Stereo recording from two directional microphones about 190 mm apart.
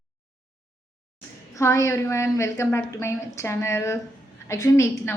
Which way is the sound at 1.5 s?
15° left (ahead or behind).